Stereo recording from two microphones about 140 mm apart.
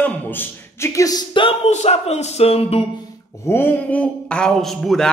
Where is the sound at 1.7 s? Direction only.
50° left (ahead or behind).